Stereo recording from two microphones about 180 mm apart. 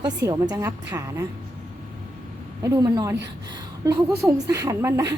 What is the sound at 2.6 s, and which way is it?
A woman's voice, 20° right (ahead or behind).